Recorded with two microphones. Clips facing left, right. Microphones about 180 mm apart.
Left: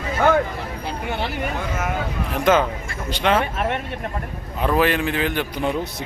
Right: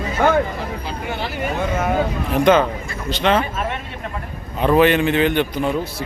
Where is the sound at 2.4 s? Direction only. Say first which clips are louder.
Right 2 dB; 5° left (ahead or behind).